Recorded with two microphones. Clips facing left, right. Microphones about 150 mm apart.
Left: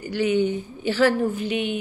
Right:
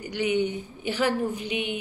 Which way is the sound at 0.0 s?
15° right (ahead or behind).